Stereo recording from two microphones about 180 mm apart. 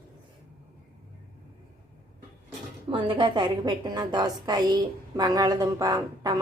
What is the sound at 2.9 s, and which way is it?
A woman's voice, 25° right (ahead or behind).